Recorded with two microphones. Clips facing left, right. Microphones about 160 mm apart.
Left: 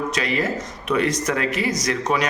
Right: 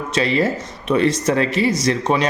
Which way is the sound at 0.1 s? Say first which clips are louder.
Right 5 dB; 30° right (ahead or behind).